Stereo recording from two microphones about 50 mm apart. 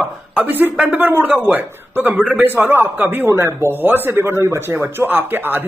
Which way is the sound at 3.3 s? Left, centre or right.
Right.